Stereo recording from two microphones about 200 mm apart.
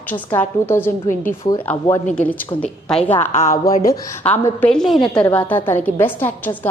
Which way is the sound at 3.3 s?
35° left (ahead or behind).